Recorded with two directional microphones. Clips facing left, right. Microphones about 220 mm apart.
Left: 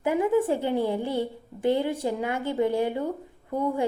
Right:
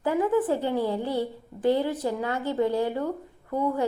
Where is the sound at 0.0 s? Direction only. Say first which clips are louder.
Left 1 dB; 20° left (ahead or behind).